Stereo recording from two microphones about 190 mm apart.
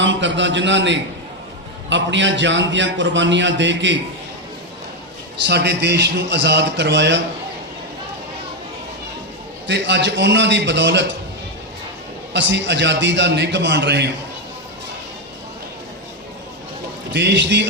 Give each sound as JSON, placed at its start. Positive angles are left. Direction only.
{"t": 0.0, "sound": "a man's voice", "side_deg": -75}
{"t": 5.5, "sound": "a man's voice", "side_deg": -60}
{"t": 9.6, "sound": "a man's voice", "side_deg": -65}
{"t": 12.3, "sound": "a man's voice", "side_deg": -70}
{"t": 17.1, "sound": "a man's voice", "side_deg": -65}